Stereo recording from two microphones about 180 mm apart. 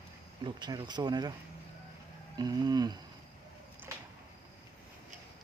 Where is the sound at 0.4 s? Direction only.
25° right (ahead or behind).